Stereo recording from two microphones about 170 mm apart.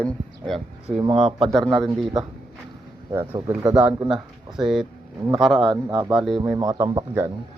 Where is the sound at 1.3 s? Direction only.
30° right (ahead or behind).